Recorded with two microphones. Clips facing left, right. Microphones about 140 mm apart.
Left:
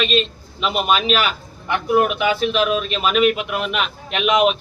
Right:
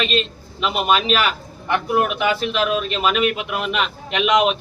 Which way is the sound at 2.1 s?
15° left (ahead or behind).